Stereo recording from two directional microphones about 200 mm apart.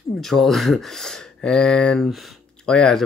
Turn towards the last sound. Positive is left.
turn(degrees=5)  # may be behind; listen again after turning